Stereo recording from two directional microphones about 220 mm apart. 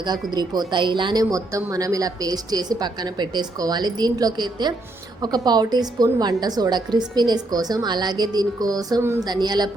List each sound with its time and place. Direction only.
0.0 s a woman's voice: 20° right (ahead or behind)